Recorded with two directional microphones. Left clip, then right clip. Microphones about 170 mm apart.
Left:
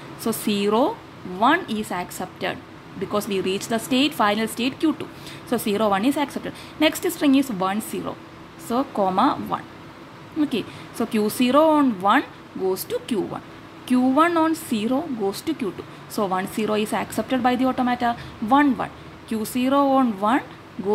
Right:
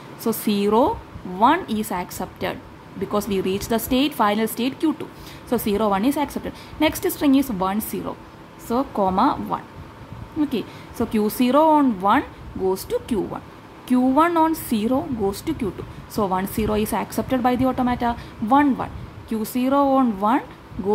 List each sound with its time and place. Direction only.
0.2 s speech: 5° right (ahead or behind)